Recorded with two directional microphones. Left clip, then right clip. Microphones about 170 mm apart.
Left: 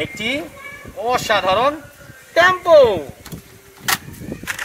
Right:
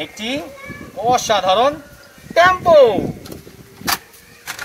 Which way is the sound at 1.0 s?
5° left (ahead or behind).